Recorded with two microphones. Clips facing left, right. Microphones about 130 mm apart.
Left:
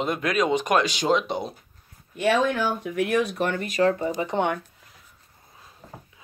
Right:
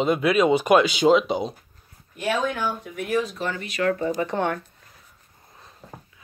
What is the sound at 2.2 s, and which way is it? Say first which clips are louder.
Speech: left 3 dB; 85° left.